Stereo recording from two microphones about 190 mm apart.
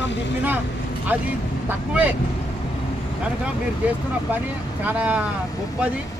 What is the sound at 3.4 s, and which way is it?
Speech, 10° right (ahead or behind).